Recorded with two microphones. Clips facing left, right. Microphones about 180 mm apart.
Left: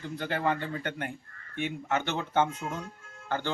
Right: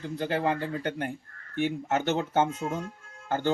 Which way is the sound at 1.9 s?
45° right (ahead or behind).